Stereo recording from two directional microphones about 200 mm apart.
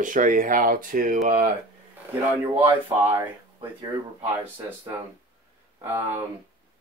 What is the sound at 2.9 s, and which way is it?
Speech, 10° right (ahead or behind).